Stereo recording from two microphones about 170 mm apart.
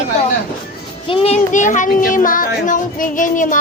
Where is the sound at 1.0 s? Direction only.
35° left (ahead or behind); by 3.6 s 50° left (ahead or behind).